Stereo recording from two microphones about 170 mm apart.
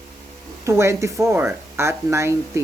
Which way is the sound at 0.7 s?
15° right (ahead or behind).